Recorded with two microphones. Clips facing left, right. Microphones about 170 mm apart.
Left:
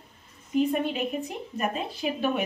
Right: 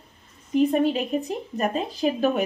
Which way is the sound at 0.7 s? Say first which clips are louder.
Right 6 dB; 35° right (ahead or behind).